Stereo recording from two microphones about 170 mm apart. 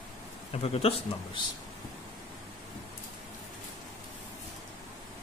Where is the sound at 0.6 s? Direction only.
35° left (ahead or behind).